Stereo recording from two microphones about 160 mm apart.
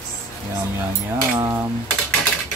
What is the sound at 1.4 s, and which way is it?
Speech, 15° right (ahead or behind).